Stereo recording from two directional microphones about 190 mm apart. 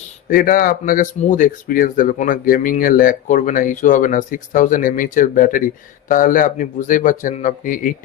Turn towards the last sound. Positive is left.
turn(degrees=45)  # may be behind; listen again after turning